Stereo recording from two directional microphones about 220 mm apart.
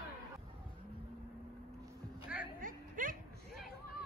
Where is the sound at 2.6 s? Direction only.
35° right (ahead or behind).